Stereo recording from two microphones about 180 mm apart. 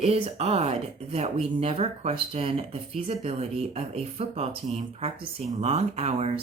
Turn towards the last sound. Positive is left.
turn(degrees=-35)  # may be behind; listen again after turning